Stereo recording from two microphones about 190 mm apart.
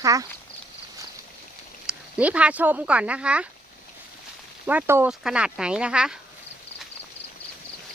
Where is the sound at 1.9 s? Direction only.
5° right (ahead or behind).